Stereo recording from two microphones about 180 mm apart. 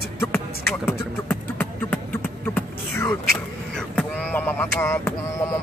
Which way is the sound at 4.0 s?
10° left (ahead or behind).